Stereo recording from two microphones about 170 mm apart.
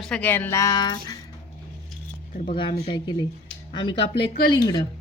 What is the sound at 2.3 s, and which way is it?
Speech, 45° left (ahead or behind).